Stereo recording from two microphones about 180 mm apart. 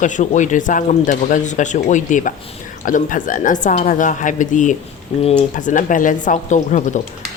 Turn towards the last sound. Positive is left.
turn(degrees=40)  # may be behind; listen again after turning